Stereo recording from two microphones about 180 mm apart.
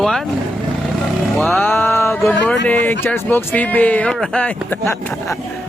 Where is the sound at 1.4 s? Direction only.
Centre (ahead or behind).